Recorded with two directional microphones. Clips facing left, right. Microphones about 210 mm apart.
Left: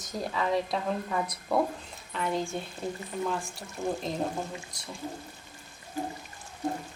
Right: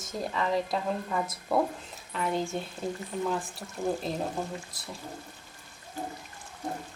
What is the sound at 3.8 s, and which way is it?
Speech, 15° right (ahead or behind).